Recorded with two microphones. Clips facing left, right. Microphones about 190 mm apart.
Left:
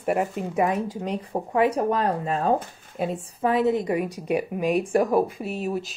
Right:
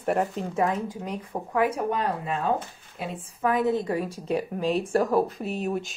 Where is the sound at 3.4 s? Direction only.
25° left (ahead or behind).